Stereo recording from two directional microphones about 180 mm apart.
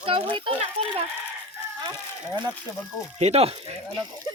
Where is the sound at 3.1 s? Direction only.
35° right (ahead or behind).